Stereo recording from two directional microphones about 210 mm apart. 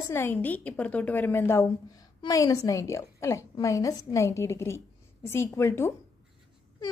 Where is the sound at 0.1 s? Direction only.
10° left (ahead or behind).